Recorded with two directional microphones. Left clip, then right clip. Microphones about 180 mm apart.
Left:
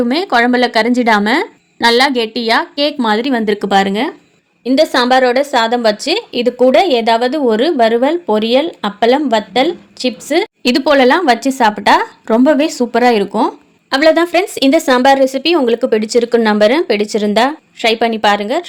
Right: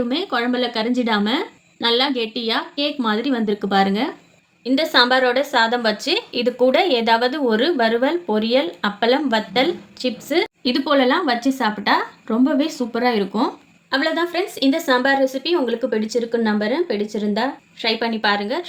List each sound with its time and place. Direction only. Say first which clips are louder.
0.1 s a woman's voice: left 9 dB; 55° left (ahead or behind); by 10.5 s 25° left (ahead or behind)
10.6 s a woman's voice: left 10 dB; 50° left (ahead or behind)